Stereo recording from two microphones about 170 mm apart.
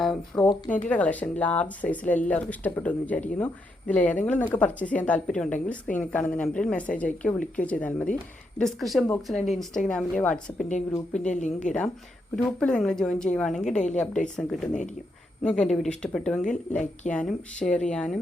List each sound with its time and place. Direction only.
0.0 s a sound: centre (ahead or behind)
0.9 s speech: 10° left (ahead or behind)
11.2 s speech: 45° left (ahead or behind)
12.5 s speech: 5° left (ahead or behind)
13.7 s speech: 45° left (ahead or behind)
14.0 s speech: 5° left (ahead or behind)